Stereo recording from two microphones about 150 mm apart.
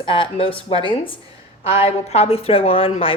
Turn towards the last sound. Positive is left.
turn(degrees=35)  # may be behind; listen again after turning